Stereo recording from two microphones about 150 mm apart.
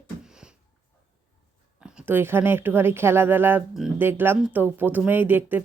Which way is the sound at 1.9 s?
15° right (ahead or behind).